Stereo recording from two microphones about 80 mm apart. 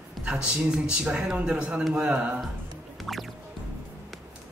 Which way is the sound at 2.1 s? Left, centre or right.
Centre.